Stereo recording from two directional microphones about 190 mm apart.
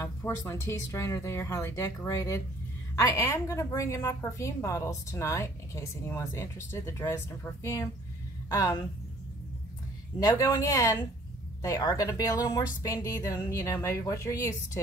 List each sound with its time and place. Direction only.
0.0 s a woman's voice: 15° left (ahead or behind)
10.2 s a woman's voice: 15° left (ahead or behind)